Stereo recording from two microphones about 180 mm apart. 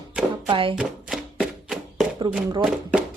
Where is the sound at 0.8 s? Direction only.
5° right (ahead or behind).